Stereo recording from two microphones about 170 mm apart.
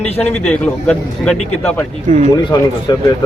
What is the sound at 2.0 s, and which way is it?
Speech, 45° right (ahead or behind).